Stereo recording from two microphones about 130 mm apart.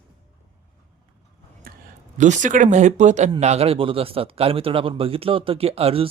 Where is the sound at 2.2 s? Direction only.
70° right (ahead or behind).